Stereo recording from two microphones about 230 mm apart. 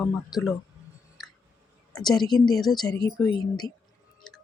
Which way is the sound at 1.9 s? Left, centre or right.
Centre.